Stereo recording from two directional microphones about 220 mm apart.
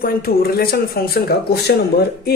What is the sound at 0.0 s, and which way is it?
Speech, 45° left (ahead or behind).